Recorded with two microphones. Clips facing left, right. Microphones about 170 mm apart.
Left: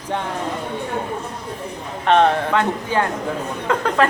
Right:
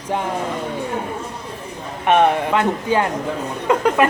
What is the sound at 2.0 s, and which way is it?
Speech, 15° right (ahead or behind).